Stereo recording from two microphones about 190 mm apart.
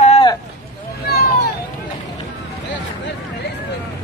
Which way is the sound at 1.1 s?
55° left (ahead or behind).